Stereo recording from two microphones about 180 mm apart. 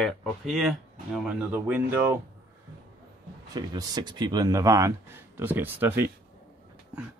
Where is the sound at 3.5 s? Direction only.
20° right (ahead or behind).